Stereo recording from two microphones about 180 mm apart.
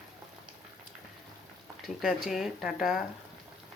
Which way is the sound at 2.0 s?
Centre (ahead or behind).